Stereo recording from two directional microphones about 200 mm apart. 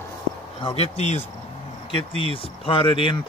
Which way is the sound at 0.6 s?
30° left (ahead or behind).